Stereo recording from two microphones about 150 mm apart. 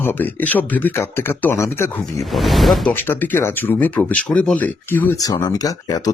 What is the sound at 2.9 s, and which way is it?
Speech, 15° left (ahead or behind).